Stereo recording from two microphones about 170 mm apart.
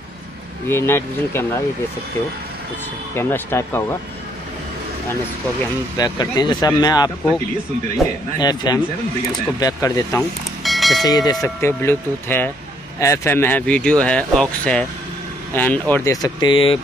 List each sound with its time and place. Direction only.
0.7 s speech: 15° left (ahead or behind)
3.2 s speech: 10° left (ahead or behind)
5.9 s speech: 20° left (ahead or behind)
8.4 s speech: 25° left (ahead or behind)
10.6 s bell: centre (ahead or behind)
11.1 s speech: 20° left (ahead or behind)